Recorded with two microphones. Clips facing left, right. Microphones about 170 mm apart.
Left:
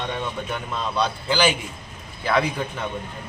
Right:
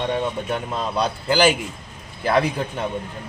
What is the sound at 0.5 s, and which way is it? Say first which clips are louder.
Speech: right 2 dB; 40° right (ahead or behind).